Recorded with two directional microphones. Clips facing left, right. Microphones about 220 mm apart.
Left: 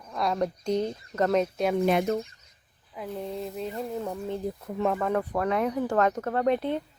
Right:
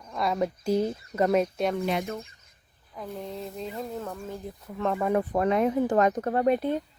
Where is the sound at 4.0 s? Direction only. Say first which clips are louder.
Left 4 dB; 20° left (ahead or behind).